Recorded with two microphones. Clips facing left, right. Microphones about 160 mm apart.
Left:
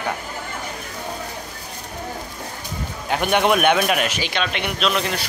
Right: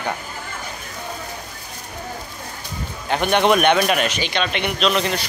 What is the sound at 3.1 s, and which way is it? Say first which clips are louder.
Speech: right 1 dB; 5° left (ahead or behind).